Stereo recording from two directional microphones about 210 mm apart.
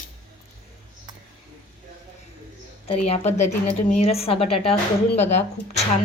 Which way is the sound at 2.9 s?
30° left (ahead or behind).